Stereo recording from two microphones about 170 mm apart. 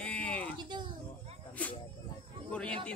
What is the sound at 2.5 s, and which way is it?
Speech, 5° left (ahead or behind).